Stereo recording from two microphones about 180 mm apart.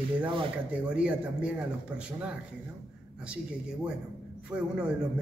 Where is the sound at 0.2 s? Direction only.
25° right (ahead or behind).